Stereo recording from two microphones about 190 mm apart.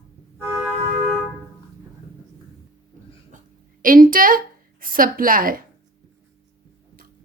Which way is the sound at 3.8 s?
45° right (ahead or behind).